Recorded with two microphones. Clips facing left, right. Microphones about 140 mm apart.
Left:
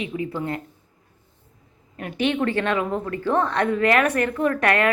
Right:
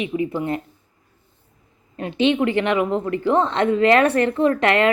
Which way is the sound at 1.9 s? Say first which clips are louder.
Right 5 dB; 25° right (ahead or behind).